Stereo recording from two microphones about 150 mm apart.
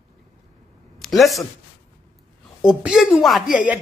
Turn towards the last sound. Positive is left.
turn(degrees=-5)  # may be behind; listen again after turning